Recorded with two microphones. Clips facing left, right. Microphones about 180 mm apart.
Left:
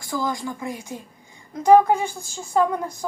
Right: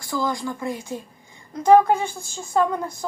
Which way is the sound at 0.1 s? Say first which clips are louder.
Right 1 dB; 20° left (ahead or behind).